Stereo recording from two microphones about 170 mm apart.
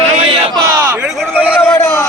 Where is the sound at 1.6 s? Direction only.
15° left (ahead or behind).